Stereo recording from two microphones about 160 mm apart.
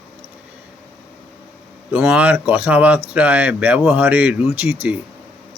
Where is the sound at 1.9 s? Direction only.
5° right (ahead or behind).